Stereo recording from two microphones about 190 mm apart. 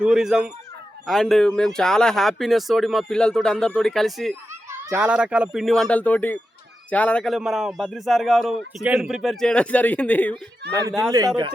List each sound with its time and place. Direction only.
0.0 s a man's voice: 5° right (ahead or behind)
10.8 s speech: 20° right (ahead or behind)